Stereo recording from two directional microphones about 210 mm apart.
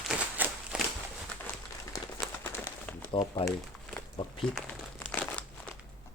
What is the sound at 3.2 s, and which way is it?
Speech, 25° left (ahead or behind).